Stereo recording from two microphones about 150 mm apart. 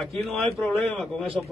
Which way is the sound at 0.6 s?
Centre (ahead or behind).